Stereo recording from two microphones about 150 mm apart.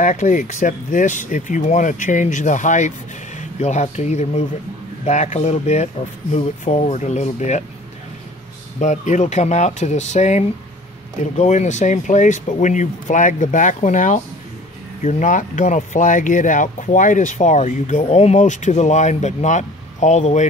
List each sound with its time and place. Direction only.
0.0 s speech: 55° left (ahead or behind)
8.7 s speech: 55° left (ahead or behind)